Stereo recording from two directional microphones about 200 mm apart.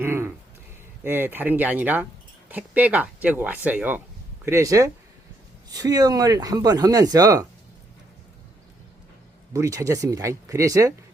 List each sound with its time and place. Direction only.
0.0 s speech: 10° right (ahead or behind)
9.5 s speech: 15° right (ahead or behind)